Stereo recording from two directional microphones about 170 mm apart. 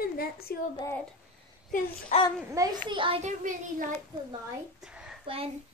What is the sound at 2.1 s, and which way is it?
Speech, 45° left (ahead or behind).